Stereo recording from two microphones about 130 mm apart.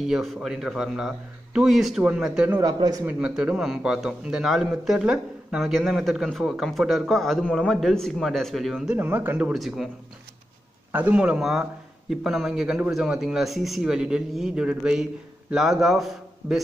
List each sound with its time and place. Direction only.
0.0 s a man's voice: centre (ahead or behind)
2.6 s a man's voice: 30° right (ahead or behind)
3.1 s a man's voice: 10° right (ahead or behind)
8.9 s a man's voice: 15° right (ahead or behind)
9.5 s a man's voice: centre (ahead or behind)
10.9 s a man's voice: 10° right (ahead or behind)